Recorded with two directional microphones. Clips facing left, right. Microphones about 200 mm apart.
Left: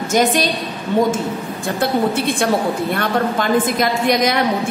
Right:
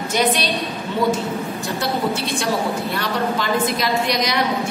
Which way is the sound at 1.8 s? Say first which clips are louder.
Left 5 dB; 55° left (ahead or behind).